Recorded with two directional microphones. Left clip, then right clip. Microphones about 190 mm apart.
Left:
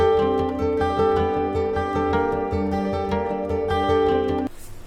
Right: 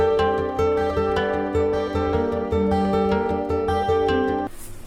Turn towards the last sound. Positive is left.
turn(degrees=0)  # may be behind; listen again after turning